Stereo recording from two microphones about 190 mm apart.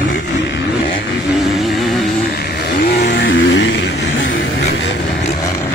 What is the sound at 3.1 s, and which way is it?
Vehicle, 70° left (ahead or behind).